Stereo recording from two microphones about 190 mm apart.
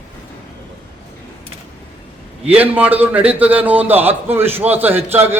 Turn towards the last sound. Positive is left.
turn(degrees=-10)  # may be behind; listen again after turning